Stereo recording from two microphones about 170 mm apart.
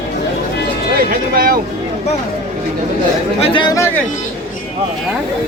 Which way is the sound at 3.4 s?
30° left (ahead or behind).